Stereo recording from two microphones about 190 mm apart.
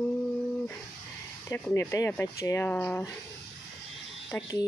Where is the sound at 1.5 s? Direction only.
10° left (ahead or behind).